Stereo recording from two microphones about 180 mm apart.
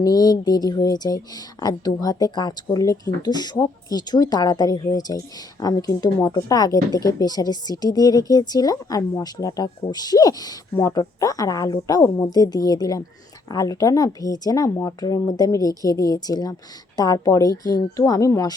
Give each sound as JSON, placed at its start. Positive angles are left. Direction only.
{"t": 0.0, "sound": "speech", "side_deg": 20}